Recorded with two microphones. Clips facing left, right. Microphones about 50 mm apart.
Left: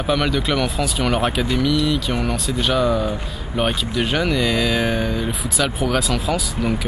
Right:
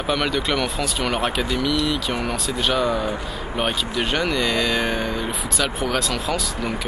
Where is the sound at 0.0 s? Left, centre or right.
Centre.